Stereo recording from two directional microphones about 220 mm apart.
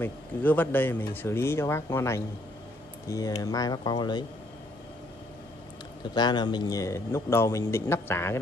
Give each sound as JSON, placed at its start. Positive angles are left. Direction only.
{"t": 0.0, "sound": "a man's voice", "side_deg": 10}
{"t": 6.1, "sound": "a man's voice", "side_deg": 20}